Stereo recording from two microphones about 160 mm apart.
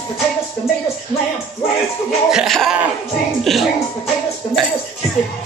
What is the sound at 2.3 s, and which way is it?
Speech, centre (ahead or behind).